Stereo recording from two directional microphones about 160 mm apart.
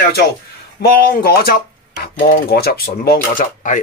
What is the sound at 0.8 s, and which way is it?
Speech, 75° left (ahead or behind).